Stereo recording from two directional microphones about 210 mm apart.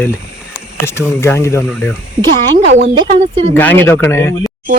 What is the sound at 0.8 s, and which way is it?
Speech, 10° left (ahead or behind).